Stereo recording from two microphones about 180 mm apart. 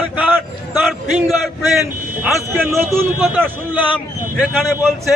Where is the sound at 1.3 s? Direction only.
Centre (ahead or behind).